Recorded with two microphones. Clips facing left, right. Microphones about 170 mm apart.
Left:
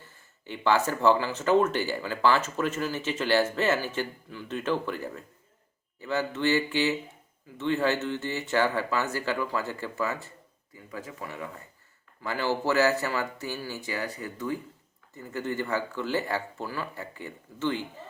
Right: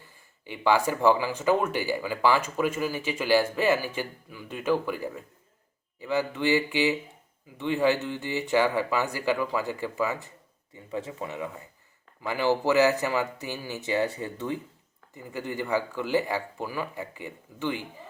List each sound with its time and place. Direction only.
0.1 s speech: 15° right (ahead or behind)